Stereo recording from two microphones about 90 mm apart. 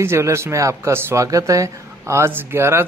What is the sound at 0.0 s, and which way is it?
Speech, 30° right (ahead or behind).